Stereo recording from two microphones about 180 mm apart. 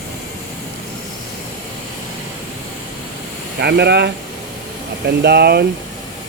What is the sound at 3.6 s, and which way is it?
Speech, 65° right (ahead or behind).